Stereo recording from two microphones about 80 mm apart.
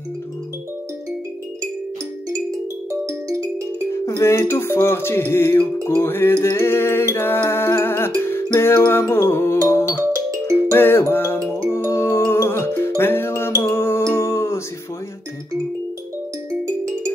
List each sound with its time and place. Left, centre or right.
2.9 s music: right
3.9 s music: left
16.6 s music: right